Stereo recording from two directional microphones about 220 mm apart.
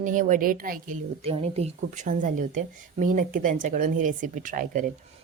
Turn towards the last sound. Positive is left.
turn(degrees=-35)  # may be behind; listen again after turning